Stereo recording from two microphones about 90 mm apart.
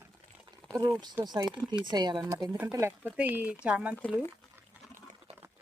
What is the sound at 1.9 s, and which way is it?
Speech, 55° right (ahead or behind).